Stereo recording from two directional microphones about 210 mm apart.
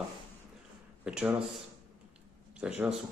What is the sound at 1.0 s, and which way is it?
Speech, 5° right (ahead or behind).